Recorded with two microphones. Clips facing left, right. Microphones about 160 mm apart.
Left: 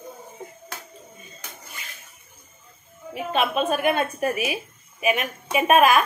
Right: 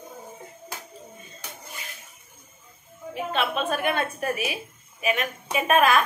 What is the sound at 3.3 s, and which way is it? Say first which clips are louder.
A woman's voice: left 4 dB; 10° left (ahead or behind).